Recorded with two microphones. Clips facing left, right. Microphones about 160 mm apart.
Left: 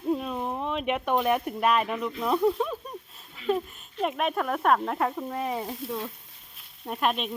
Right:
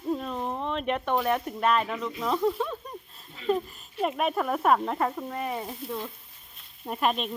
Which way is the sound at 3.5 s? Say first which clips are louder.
Even; centre (ahead or behind).